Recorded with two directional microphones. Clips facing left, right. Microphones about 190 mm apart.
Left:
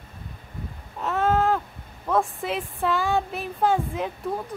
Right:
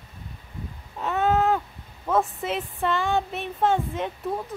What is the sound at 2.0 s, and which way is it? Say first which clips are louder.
A woman's voice: even; centre (ahead or behind).